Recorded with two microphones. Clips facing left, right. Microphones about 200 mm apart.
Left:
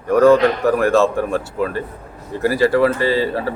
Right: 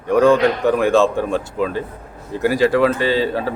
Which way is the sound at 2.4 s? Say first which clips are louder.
Even; 90° right.